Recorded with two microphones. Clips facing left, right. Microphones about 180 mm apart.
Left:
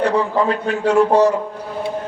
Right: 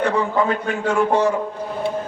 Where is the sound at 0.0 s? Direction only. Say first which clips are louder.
Left 2 dB; 35° left (ahead or behind).